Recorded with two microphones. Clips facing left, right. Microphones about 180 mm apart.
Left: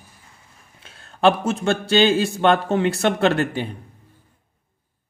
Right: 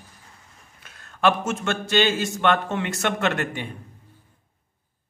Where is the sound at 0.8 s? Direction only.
30° left (ahead or behind).